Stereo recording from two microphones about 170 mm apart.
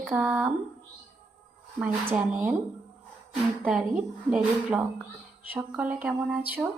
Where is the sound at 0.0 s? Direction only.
5° right (ahead or behind).